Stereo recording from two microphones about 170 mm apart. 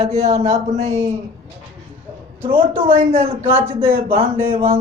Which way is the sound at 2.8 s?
35° right (ahead or behind).